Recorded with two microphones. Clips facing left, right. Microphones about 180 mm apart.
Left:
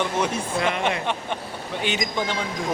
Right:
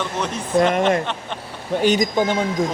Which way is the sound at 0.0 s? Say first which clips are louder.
Left 1 dB; 10° left (ahead or behind).